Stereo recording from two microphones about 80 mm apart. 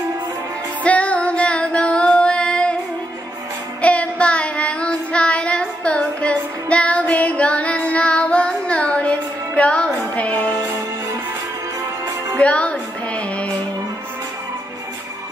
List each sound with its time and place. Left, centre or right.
0.8 s female singing: centre
3.8 s child singing: centre
9.8 s music: centre
12.4 s music: centre